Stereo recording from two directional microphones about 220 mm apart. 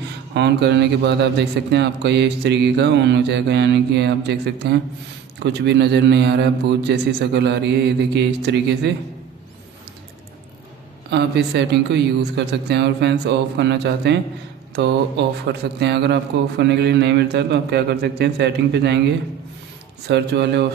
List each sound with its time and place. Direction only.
0.3 s a man's voice: 50° right (ahead or behind)
11.1 s a man's voice: 50° right (ahead or behind)
20.1 s a man's voice: 50° right (ahead or behind)